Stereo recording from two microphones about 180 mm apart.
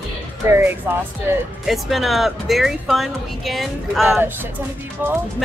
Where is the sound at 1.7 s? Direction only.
Centre (ahead or behind).